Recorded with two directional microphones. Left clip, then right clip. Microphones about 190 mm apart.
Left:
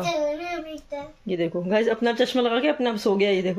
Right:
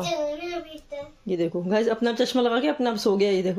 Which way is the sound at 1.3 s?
5° right (ahead or behind).